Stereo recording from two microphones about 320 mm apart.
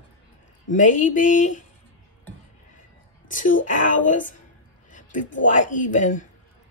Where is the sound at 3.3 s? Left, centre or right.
Left.